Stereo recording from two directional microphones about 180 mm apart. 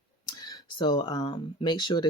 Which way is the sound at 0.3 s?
20° left (ahead or behind).